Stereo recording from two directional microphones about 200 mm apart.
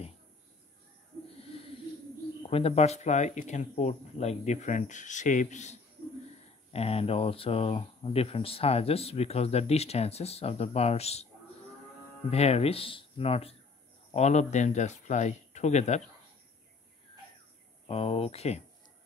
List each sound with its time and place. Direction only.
2.4 s speech: 30° left (ahead or behind)
12.3 s speech: 30° left (ahead or behind)
17.8 s speech: 30° left (ahead or behind)